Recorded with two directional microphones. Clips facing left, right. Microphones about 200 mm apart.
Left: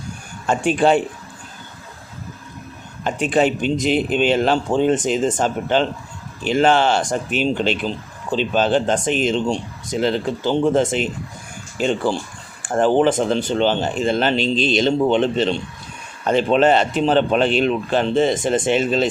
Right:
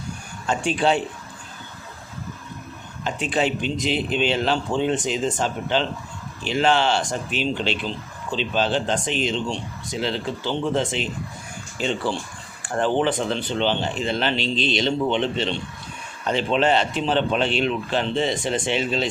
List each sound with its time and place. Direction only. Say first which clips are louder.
0.4 s speech: left 5 dB; 55° left (ahead or behind)
3.0 s speech: left 6 dB; 50° left (ahead or behind)